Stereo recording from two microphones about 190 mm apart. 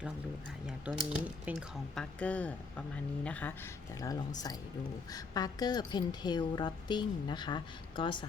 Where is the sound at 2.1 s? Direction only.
5° left (ahead or behind).